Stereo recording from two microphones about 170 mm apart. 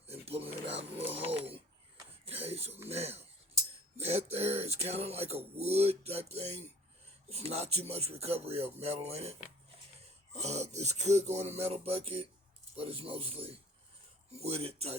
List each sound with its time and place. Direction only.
0.1 s a sound: 35° right (ahead or behind)
7.3 s speech: 35° right (ahead or behind)
10.3 s speech: 40° right (ahead or behind)